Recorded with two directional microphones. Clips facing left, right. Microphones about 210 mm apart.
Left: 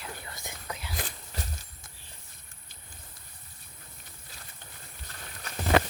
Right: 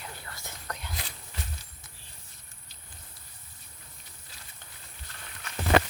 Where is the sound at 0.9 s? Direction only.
50° left (ahead or behind).